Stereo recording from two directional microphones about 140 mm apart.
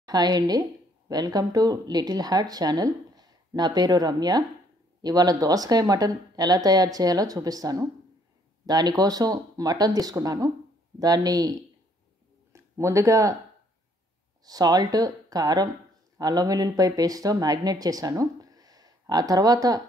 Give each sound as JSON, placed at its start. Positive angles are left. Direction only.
{"t": 0.0, "sound": "speech", "side_deg": -30}
{"t": 12.5, "sound": "speech", "side_deg": -20}
{"t": 14.4, "sound": "a woman's voice", "side_deg": -30}